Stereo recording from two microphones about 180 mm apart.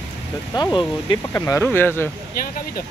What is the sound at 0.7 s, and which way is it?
Speech, 25° left (ahead or behind).